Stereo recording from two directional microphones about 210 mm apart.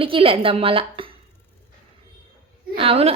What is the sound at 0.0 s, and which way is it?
A woman's voice, 25° right (ahead or behind).